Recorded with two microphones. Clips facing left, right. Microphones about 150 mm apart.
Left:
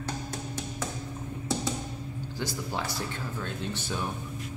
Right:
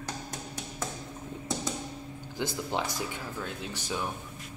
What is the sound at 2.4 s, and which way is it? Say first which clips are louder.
Speech: right 2 dB; 20° right (ahead or behind).